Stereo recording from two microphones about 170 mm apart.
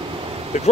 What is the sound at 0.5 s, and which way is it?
Speech, 45° left (ahead or behind).